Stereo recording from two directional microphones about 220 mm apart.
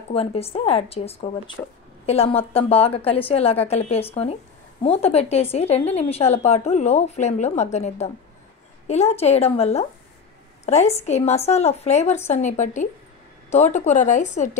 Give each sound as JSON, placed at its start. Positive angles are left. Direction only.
{"t": 0.1, "sound": "a woman's voice", "side_deg": 25}